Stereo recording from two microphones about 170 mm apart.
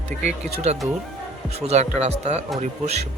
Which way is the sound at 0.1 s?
50° right (ahead or behind).